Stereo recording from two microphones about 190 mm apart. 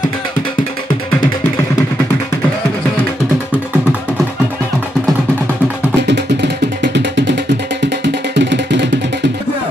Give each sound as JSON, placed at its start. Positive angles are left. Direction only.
{"t": 6.0, "sound": "music", "side_deg": -65}